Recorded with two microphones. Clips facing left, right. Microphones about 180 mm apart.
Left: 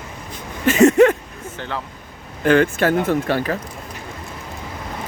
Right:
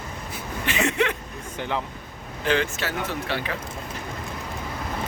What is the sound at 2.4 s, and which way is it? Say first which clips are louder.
Speech: left 9 dB; 55° left (ahead or behind).